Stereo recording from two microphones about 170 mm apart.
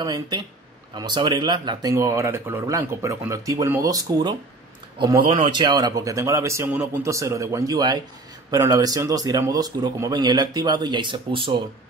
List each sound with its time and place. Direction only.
0.0 s a man's voice: 25° right (ahead or behind)